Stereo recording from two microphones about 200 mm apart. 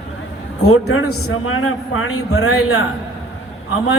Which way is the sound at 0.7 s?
90° left.